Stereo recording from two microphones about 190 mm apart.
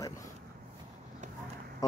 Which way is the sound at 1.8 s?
20° left (ahead or behind).